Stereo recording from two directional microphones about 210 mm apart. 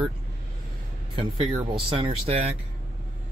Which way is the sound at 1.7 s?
25° right (ahead or behind).